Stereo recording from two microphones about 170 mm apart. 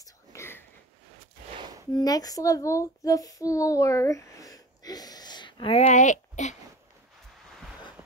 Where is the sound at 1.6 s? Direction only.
20° right (ahead or behind).